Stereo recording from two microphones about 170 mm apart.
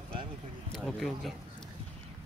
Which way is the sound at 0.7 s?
5° left (ahead or behind).